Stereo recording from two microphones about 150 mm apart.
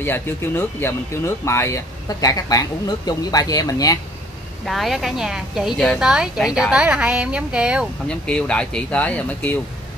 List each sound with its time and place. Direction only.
0.0 s speech: 15° left (ahead or behind)
4.6 s a woman's voice: centre (ahead or behind)
8.1 s speech: 5° left (ahead or behind)